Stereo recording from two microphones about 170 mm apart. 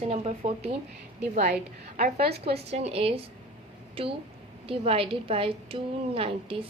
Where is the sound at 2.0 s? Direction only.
60° right (ahead or behind).